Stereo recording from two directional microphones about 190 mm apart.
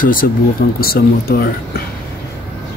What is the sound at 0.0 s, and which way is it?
Speech, 45° left (ahead or behind).